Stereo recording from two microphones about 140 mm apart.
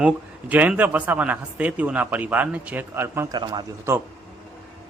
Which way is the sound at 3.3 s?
30° right (ahead or behind).